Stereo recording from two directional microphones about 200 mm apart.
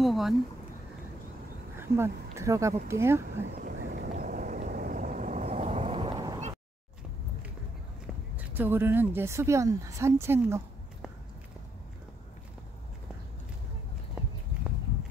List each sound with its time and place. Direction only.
0.0 s speech: centre (ahead or behind)
1.8 s speech: 15° right (ahead or behind)
3.6 s vehicle: 45° right (ahead or behind); by 6.4 s 20° right (ahead or behind)
8.4 s speech: 10° right (ahead or behind)